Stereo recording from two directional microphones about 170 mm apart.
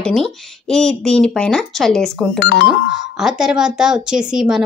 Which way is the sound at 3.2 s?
5° right (ahead or behind).